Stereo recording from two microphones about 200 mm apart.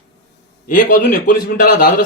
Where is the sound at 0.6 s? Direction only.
45° left (ahead or behind).